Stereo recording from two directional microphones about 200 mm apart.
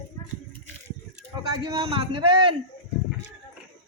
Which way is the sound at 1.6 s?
25° right (ahead or behind).